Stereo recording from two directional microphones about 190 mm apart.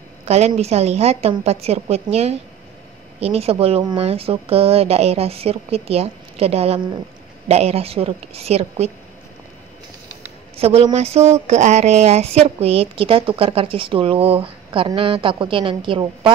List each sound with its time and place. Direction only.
0.3 s speech: 35° right (ahead or behind)
10.6 s speech: 30° right (ahead or behind)